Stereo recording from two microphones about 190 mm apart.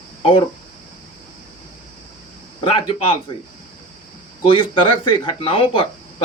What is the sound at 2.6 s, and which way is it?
Speech, 30° left (ahead or behind).